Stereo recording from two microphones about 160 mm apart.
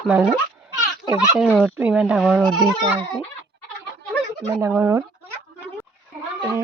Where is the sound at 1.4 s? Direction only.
Centre (ahead or behind).